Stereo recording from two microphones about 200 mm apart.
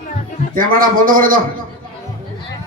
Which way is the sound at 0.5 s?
45° right (ahead or behind).